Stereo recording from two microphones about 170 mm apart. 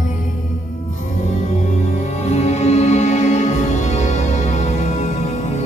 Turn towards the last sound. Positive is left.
turn(degrees=40)  # may be behind; listen again after turning